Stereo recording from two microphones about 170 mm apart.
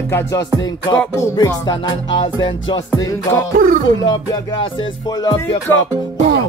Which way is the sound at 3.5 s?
55° right (ahead or behind).